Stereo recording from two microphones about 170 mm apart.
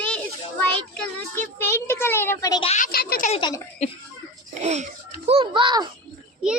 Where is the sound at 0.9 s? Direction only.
10° left (ahead or behind).